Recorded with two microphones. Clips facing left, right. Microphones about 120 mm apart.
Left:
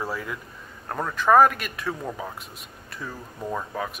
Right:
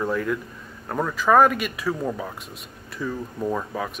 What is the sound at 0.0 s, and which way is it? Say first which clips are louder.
Speech: right 7 dB; 5° left (ahead or behind).